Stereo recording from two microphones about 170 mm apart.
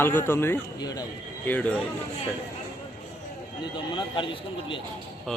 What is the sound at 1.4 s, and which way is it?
Speech, 10° left (ahead or behind).